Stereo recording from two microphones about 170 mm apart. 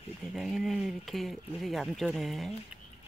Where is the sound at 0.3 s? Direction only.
Centre (ahead or behind).